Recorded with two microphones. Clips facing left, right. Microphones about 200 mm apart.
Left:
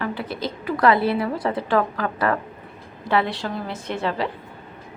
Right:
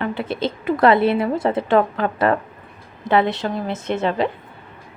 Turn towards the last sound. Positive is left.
turn(degrees=-20)  # may be behind; listen again after turning